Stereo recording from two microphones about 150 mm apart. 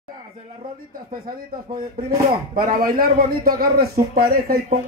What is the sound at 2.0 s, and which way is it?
A man's voice, 75° right (ahead or behind).